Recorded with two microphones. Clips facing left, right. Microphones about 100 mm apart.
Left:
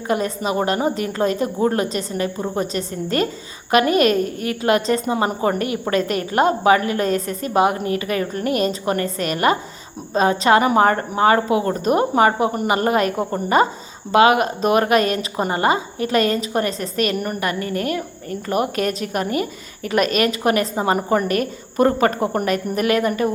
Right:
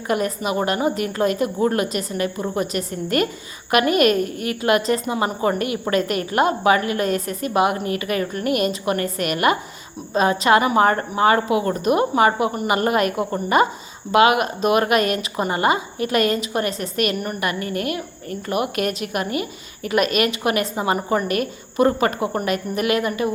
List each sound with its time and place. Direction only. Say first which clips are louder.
0.1 s speech: left 1 dB; 30° left (ahead or behind)